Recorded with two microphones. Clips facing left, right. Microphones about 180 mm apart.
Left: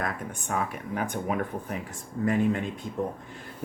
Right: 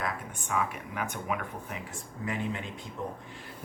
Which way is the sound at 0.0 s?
40° left (ahead or behind).